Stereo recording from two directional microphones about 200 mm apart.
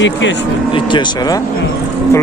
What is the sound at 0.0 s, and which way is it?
Speech, 65° left (ahead or behind).